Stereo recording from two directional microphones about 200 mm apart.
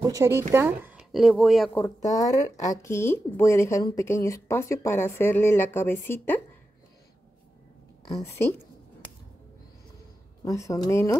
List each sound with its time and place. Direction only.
0.0 s speech: 15° right (ahead or behind); by 1.8 s centre (ahead or behind)
2.2 s speech: 15° left (ahead or behind)
8.1 s speech: 15° left (ahead or behind)
10.4 s speech: 15° left (ahead or behind)